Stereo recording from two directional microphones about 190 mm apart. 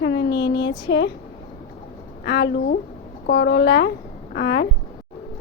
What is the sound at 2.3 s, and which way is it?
A woman's voice, 65° left (ahead or behind).